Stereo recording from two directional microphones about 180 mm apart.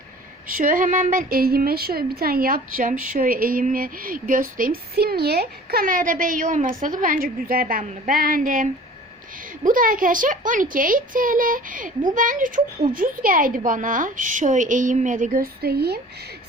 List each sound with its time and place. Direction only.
0.4 s a woman's voice: 50° right (ahead or behind)